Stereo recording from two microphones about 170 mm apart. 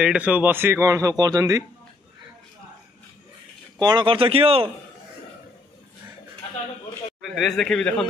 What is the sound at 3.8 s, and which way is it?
Speech, 25° right (ahead or behind).